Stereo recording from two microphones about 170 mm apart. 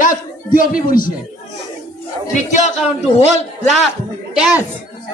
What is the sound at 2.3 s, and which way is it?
Speech, 45° left (ahead or behind).